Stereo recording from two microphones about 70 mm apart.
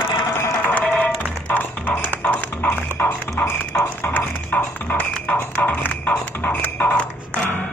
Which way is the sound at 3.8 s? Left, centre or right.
Left.